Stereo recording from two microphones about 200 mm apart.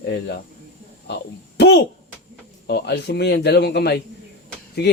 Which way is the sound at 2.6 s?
55° left (ahead or behind).